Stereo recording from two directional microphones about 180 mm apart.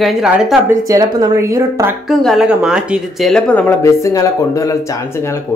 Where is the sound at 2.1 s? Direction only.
Centre (ahead or behind).